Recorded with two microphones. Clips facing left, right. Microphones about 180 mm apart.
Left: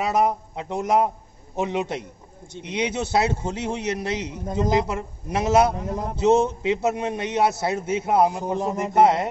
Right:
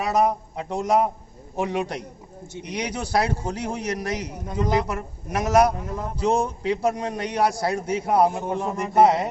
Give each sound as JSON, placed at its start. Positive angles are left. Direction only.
{"t": 0.0, "sound": "a man's voice", "side_deg": 20}